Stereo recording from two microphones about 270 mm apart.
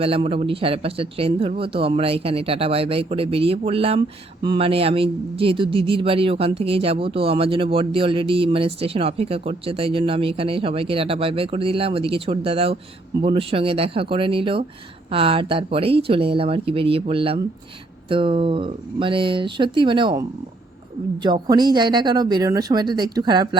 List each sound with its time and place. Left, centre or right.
0.0 s speech: right